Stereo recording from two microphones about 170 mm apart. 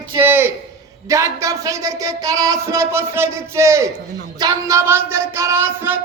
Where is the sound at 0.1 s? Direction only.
15° right (ahead or behind).